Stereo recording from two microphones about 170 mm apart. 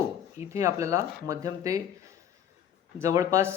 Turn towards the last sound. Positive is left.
turn(degrees=-20)  # may be behind; listen again after turning